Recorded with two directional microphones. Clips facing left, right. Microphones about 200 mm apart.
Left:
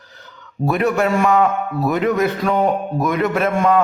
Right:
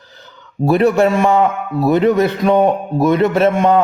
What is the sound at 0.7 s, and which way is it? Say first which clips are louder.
A man's voice: right 5 dB; 30° right (ahead or behind).